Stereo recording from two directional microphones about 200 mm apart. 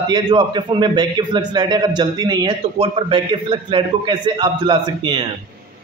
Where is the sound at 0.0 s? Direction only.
20° right (ahead or behind).